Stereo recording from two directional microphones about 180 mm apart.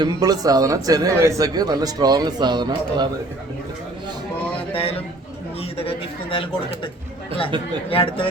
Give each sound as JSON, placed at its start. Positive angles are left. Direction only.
{"t": 0.0, "sound": "a man's voice", "side_deg": -20}
{"t": 4.7, "sound": "speech", "side_deg": 30}
{"t": 7.5, "sound": "a man's voice", "side_deg": -25}
{"t": 7.9, "sound": "speech", "side_deg": 30}